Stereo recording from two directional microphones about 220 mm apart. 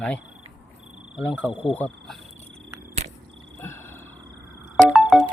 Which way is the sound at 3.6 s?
10° left (ahead or behind).